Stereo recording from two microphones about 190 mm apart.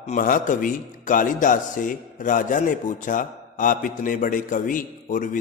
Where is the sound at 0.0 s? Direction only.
45° left (ahead or behind).